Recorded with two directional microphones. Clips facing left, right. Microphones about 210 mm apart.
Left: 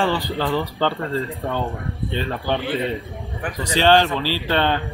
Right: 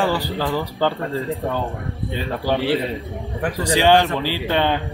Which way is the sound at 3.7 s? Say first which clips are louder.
Even; 15° right (ahead or behind).